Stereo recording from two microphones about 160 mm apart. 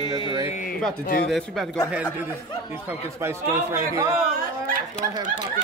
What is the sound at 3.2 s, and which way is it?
Speech, 15° right (ahead or behind).